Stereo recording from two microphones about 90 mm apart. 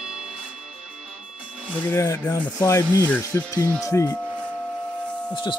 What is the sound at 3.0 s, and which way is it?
Speech, 15° left (ahead or behind).